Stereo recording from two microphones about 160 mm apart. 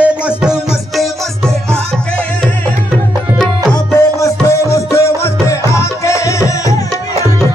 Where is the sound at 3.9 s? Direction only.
20° left (ahead or behind).